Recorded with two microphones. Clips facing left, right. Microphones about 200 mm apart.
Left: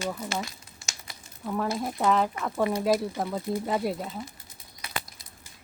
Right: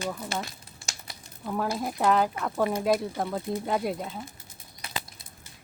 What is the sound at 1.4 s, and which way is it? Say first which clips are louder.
Speech: even; centre (ahead or behind).